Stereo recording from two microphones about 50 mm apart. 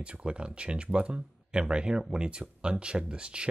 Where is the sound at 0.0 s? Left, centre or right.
Right.